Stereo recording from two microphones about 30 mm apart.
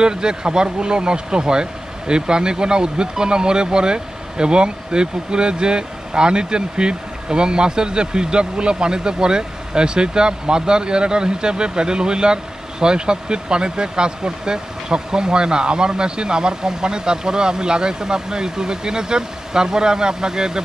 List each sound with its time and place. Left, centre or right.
0.0 s speech: right